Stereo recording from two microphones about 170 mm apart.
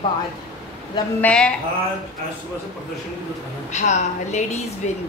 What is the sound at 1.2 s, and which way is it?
Speech, 5° left (ahead or behind).